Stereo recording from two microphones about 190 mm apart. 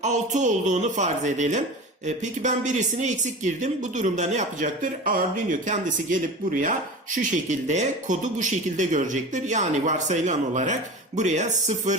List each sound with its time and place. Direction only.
0.0 s speech: 40° right (ahead or behind)